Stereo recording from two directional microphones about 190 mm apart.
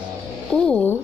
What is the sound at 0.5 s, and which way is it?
Speech, 5° left (ahead or behind).